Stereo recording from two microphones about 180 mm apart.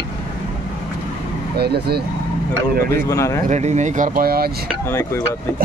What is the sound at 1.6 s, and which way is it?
Speech, 60° right (ahead or behind).